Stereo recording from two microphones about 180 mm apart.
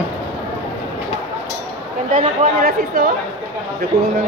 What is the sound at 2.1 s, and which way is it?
Speech, 50° right (ahead or behind).